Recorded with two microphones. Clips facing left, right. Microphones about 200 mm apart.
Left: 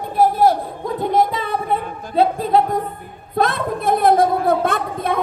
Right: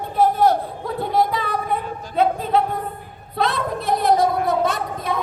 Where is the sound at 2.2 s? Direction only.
40° left (ahead or behind).